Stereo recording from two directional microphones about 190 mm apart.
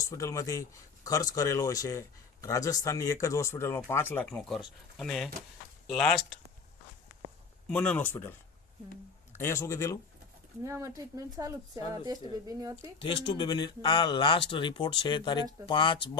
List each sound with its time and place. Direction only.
0.0 s speech: 15° left (ahead or behind); by 6.4 s centre (ahead or behind)
7.7 s speech: 5° left (ahead or behind)
10.6 s speech: 15° right (ahead or behind)
13.0 s speech: 25° left (ahead or behind)